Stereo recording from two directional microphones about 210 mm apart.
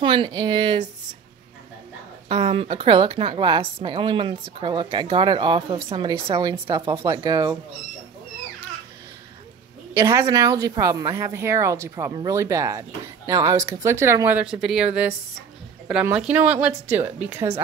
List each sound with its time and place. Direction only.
0.0 s a woman's voice: 25° right (ahead or behind)
2.2 s a woman's voice: 30° right (ahead or behind)
9.9 s speech: 15° right (ahead or behind)
15.9 s speech: 5° right (ahead or behind)